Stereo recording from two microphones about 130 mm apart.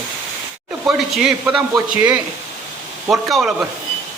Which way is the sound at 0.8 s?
5° right (ahead or behind).